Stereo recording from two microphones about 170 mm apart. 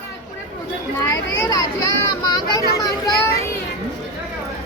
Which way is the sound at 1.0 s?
20° left (ahead or behind).